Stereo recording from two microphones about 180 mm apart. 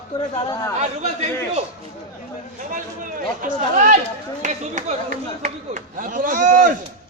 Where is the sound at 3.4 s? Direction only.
45° right (ahead or behind).